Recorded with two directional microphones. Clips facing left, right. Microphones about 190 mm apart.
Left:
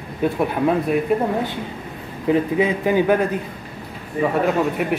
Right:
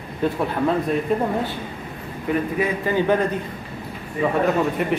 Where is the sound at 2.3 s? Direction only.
15° left (ahead or behind).